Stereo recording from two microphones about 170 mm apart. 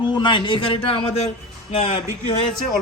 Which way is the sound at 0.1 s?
25° left (ahead or behind).